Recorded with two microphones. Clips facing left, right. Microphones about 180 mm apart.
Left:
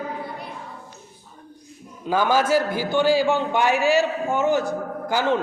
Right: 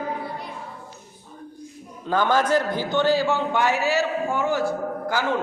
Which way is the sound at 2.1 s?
10° left (ahead or behind).